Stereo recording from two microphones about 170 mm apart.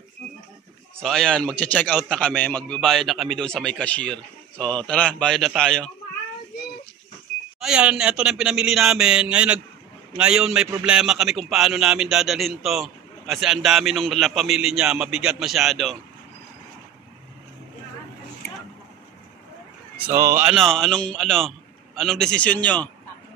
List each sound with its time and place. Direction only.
1.0 s a man's voice: 5° left (ahead or behind)
7.6 s a man's voice: 5° right (ahead or behind)
20.0 s speech: 15° right (ahead or behind)
20.5 s a man's voice: 5° left (ahead or behind)